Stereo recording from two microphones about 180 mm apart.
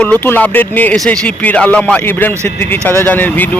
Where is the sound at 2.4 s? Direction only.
40° right (ahead or behind).